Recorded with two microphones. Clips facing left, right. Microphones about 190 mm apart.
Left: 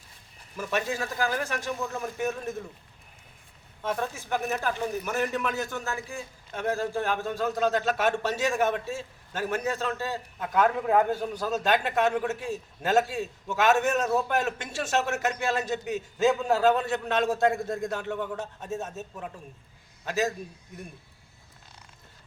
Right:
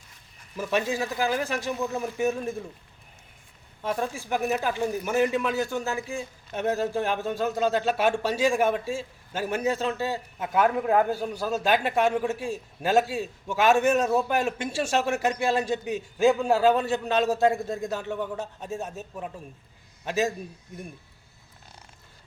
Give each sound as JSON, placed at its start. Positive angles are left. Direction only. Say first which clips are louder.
{"t": 0.5, "sound": "a man's voice", "louder": "right 3 dB", "side_deg": -15}
{"t": 3.8, "sound": "a man's voice", "louder": "right 2 dB", "side_deg": -10}
{"t": 15.9, "sound": "a man's voice", "louder": "right 1 dB", "side_deg": 0}
{"t": 16.2, "sound": "a man's voice", "louder": "right 2 dB", "side_deg": -10}